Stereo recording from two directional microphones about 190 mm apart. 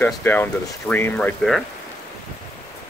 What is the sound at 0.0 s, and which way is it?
Speech, 10° left (ahead or behind).